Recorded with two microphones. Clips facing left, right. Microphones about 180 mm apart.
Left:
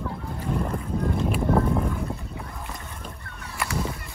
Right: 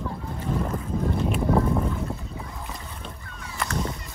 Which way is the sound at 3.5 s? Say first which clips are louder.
Even; 5° left (ahead or behind).